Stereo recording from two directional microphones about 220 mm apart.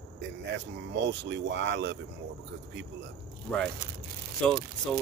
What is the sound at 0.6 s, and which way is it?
Speech, 55° right (ahead or behind).